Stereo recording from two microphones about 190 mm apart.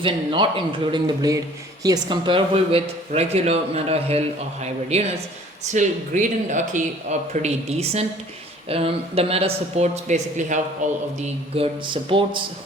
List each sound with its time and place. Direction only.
0.0 s speech: 25° right (ahead or behind)
11.2 s speech: 30° right (ahead or behind)